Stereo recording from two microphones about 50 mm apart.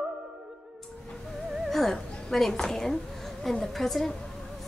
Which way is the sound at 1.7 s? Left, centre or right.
Centre.